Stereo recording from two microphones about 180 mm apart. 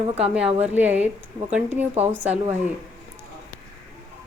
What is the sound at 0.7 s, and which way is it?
Speech, 10° right (ahead or behind).